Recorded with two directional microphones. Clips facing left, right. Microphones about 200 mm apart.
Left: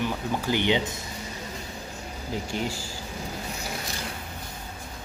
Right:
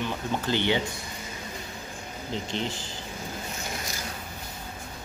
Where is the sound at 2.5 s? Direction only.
10° left (ahead or behind).